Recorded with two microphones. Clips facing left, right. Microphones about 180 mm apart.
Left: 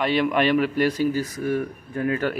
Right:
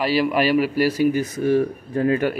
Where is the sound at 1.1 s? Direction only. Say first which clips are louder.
Right 5 dB; 25° right (ahead or behind).